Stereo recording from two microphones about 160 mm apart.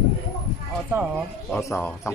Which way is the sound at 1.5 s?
15° left (ahead or behind).